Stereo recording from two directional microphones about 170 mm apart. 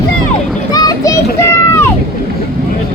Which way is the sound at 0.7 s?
25° left (ahead or behind).